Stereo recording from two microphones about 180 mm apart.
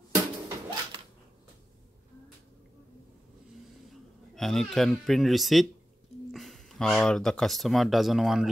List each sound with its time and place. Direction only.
0.1 s music: 20° right (ahead or behind)
3.9 s speech: centre (ahead or behind)